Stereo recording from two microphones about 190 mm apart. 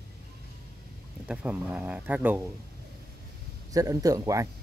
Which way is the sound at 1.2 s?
5° right (ahead or behind).